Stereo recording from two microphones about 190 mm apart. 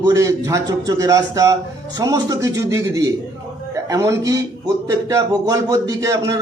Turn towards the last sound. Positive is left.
turn(degrees=-15)  # may be behind; listen again after turning